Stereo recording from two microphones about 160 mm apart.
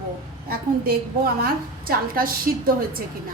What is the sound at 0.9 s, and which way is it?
A woman's voice, 70° right (ahead or behind).